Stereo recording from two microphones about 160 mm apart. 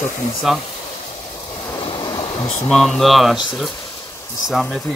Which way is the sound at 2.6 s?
Centre (ahead or behind).